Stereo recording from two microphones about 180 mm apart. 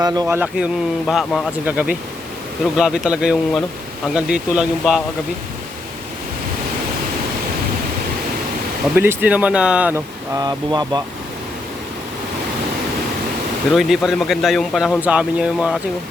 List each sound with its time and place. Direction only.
0.0 s speech: 20° right (ahead or behind)
0.3 s a man's voice: 5° right (ahead or behind)
9.0 s speech: 10° right (ahead or behind)
10.3 s speech: 20° right (ahead or behind)
13.7 s a man's voice: centre (ahead or behind)